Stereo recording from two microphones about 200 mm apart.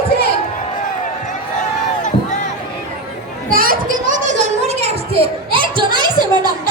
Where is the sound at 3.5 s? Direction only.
45° right (ahead or behind).